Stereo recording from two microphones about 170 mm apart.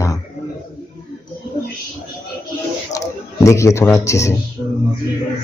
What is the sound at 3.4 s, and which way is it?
Speech, 15° left (ahead or behind).